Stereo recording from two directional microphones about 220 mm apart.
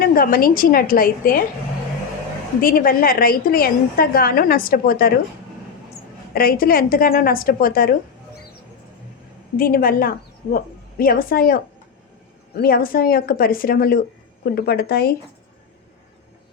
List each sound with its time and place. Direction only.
0.0 s a woman's voice: 40° left (ahead or behind)
2.6 s a woman's voice: 40° left (ahead or behind)
6.3 s a woman's voice: 40° left (ahead or behind)
9.6 s a woman's voice: 40° left (ahead or behind)